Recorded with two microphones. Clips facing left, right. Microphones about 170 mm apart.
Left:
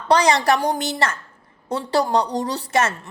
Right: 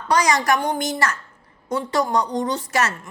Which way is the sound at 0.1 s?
30° left (ahead or behind).